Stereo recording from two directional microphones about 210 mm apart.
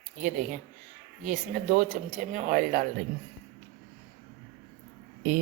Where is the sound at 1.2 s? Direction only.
35° right (ahead or behind).